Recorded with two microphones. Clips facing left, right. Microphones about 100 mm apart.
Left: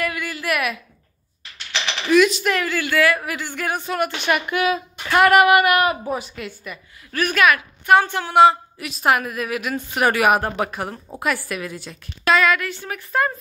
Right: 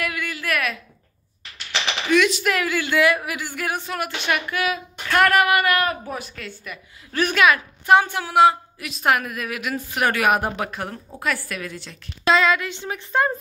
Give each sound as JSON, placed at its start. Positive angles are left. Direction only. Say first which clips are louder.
{"t": 0.0, "sound": "a sound", "louder": "left 2 dB", "side_deg": 0}
{"t": 2.0, "sound": "speech", "louder": "left 3 dB", "side_deg": 0}
{"t": 2.8, "sound": "speech", "louder": "even", "side_deg": -20}
{"t": 4.5, "sound": "a woman's voice", "louder": "left 4 dB", "side_deg": 30}
{"t": 7.2, "sound": "speech", "louder": "even", "side_deg": -20}
{"t": 8.0, "sound": "a woman's voice", "louder": "left 2 dB", "side_deg": -10}
{"t": 12.3, "sound": "speech", "louder": "left 1 dB", "side_deg": -25}